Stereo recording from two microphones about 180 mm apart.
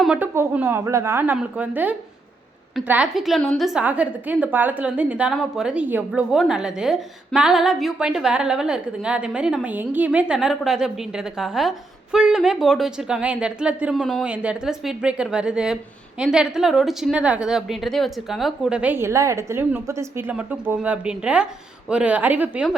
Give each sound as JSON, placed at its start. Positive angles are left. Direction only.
{"t": 0.0, "sound": "a woman's voice", "side_deg": -5}